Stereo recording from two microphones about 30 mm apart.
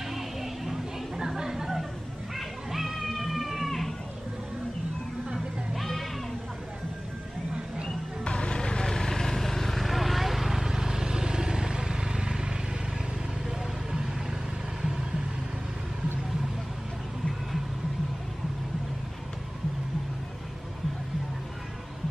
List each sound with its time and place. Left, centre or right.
0.1 s a sound: centre
1.4 s a sound: centre
2.3 s music: centre
5.8 s music: centre
8.2 s music: left
8.8 s vehicle: centre; by 12.4 s right